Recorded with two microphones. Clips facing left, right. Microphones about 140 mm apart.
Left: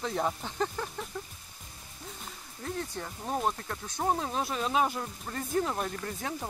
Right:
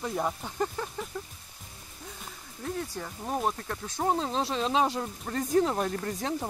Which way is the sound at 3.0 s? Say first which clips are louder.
Right 1 dB; centre (ahead or behind).